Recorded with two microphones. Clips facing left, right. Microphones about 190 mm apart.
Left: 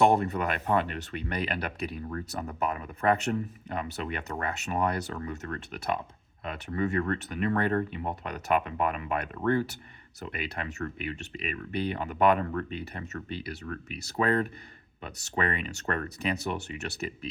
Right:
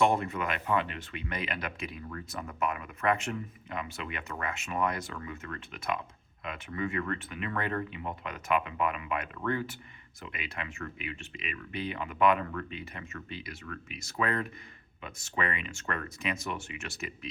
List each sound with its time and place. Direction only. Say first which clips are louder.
0.0 s speech: left 4 dB; 40° left (ahead or behind)